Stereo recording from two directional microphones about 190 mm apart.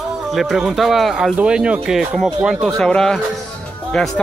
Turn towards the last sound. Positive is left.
turn(degrees=0)  # may be behind; listen again after turning